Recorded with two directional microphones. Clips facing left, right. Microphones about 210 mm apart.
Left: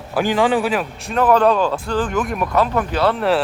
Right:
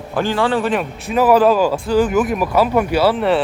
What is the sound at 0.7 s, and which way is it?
Speech, 5° right (ahead or behind).